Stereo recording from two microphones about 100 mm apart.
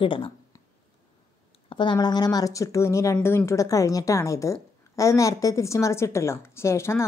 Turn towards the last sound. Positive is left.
turn(degrees=25)  # may be behind; listen again after turning